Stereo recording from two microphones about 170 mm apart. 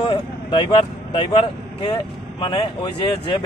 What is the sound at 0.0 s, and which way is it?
Speech, 30° left (ahead or behind).